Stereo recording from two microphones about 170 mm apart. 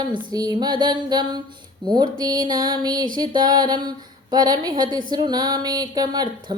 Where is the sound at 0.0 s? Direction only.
25° right (ahead or behind).